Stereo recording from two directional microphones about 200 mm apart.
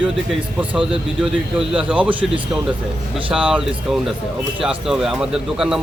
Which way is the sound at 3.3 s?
5° right (ahead or behind).